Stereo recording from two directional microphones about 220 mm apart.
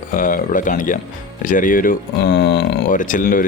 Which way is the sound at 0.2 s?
40° left (ahead or behind).